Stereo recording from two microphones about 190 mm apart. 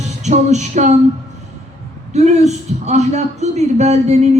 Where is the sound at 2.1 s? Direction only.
35° right (ahead or behind).